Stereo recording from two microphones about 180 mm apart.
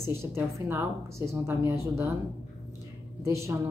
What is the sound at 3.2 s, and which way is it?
Speech, 15° right (ahead or behind).